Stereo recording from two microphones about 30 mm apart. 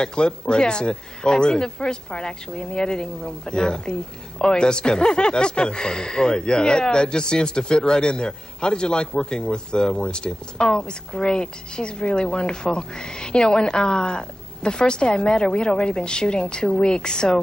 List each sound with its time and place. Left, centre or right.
0.0 s speech: left